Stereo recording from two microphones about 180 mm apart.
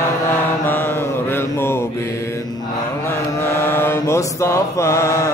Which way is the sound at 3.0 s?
15° left (ahead or behind).